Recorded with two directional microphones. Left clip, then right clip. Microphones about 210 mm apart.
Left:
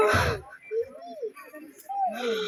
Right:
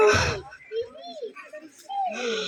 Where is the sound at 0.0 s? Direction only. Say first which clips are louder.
Right 3 dB; 15° right (ahead or behind).